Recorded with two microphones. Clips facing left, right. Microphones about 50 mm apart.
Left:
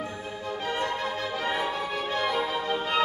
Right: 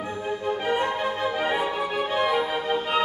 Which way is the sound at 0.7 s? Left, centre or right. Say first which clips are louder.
Right 3 dB; right.